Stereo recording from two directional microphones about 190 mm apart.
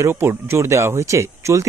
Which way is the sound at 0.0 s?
15° right (ahead or behind).